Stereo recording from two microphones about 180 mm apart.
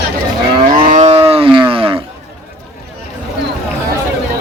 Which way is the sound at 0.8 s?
45° right (ahead or behind).